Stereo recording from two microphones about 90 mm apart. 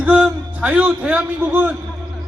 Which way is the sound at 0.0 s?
10° right (ahead or behind).